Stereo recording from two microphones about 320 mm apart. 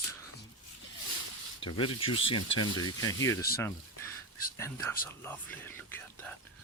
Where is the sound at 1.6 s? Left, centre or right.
Centre.